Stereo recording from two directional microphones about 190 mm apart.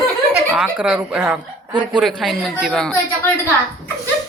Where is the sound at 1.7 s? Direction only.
25° right (ahead or behind).